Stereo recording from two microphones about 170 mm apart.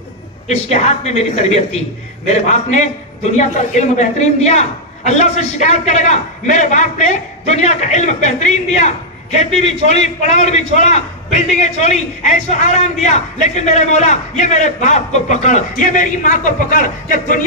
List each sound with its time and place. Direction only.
0.5 s speech: 40° left (ahead or behind)
3.3 s a woman's voice: 45° left (ahead or behind)